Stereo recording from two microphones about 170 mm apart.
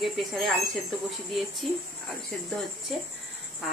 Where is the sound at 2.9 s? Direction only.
Centre (ahead or behind).